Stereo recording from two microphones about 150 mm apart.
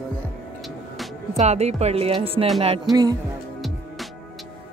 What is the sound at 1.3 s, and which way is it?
Speech, 50° right (ahead or behind).